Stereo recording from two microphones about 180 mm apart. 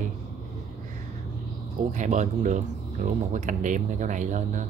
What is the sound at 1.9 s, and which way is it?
Speech, 40° right (ahead or behind).